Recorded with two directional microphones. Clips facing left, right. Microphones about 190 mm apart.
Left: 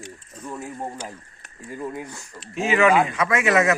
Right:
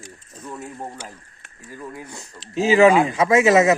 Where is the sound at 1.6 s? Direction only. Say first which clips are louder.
Left 4 dB; 25° left (ahead or behind).